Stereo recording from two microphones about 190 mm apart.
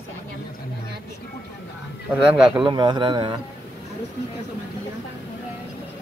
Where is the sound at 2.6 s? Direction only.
25° right (ahead or behind).